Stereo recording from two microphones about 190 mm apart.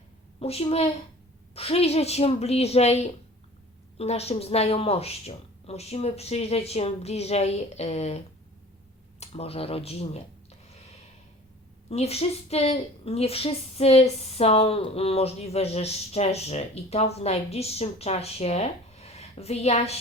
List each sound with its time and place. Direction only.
0.3 s a woman's voice: 30° left (ahead or behind)
9.2 s speech: 30° left (ahead or behind)
11.9 s a woman's voice: 30° left (ahead or behind)